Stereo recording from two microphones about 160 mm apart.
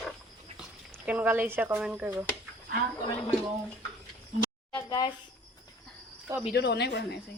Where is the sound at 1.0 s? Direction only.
10° right (ahead or behind).